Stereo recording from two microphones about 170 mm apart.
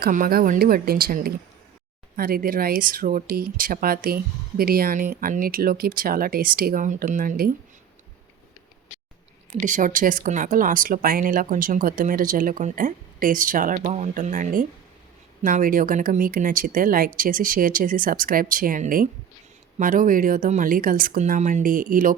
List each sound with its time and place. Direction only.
0.0 s speech: 60° right (ahead or behind)
9.6 s speech: 50° right (ahead or behind)
13.7 s speech: 40° right (ahead or behind)